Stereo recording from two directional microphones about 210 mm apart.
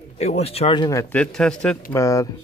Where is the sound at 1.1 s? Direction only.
5° left (ahead or behind).